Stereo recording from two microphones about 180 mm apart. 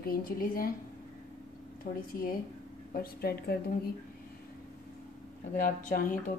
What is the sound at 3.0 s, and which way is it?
Speech, 60° left (ahead or behind).